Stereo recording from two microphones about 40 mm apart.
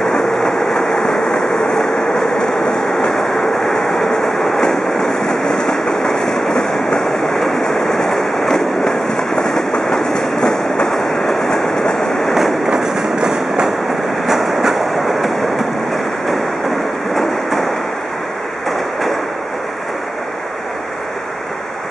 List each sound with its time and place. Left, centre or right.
0.3 s vehicle: centre
3.5 s train: centre
12.6 s train: centre
14.2 s train: centre
17.1 s train: centre